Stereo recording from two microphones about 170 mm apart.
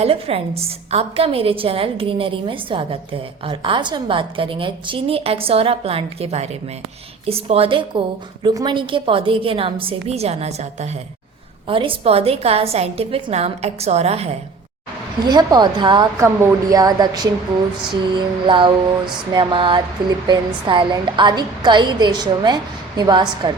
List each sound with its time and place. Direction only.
0.0 s a woman's voice: 35° right (ahead or behind)
15.2 s speech: 25° right (ahead or behind)
18.4 s speech: 30° right (ahead or behind)